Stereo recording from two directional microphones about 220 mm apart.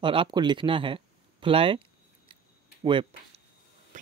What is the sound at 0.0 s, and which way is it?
Speech, 25° right (ahead or behind).